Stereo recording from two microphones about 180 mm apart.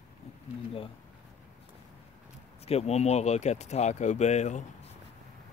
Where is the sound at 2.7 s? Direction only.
35° left (ahead or behind).